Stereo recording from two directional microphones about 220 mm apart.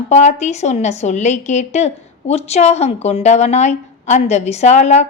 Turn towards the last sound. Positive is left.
turn(degrees=30)  # may be behind; listen again after turning